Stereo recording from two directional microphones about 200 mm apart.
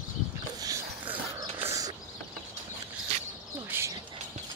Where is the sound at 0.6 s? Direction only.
15° right (ahead or behind).